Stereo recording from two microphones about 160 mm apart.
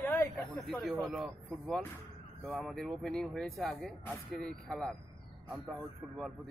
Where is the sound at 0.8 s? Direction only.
Centre (ahead or behind).